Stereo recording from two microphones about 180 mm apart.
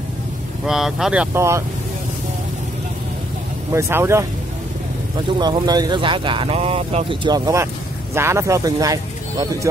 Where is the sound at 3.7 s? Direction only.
15° right (ahead or behind).